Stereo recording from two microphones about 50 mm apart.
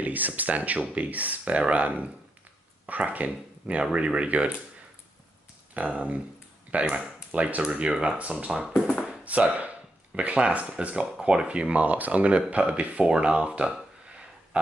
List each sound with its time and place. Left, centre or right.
0.0 s speech: right
5.8 s speech: right
8.5 s speech: centre
9.2 s speech: right
14.5 s a sound: right